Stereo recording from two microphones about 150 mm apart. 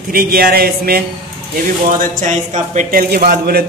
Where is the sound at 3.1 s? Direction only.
90° right.